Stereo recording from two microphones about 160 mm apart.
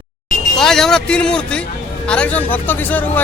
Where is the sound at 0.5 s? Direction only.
5° left (ahead or behind).